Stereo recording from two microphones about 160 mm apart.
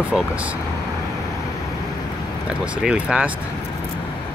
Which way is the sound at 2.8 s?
5° right (ahead or behind).